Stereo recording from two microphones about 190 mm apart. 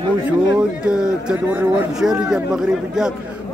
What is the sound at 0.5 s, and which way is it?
A man's voice, 5° right (ahead or behind).